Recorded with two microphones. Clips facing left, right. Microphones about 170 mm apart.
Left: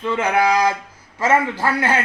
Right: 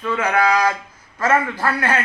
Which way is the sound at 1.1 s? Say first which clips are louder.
Left 1 dB; 20° left (ahead or behind).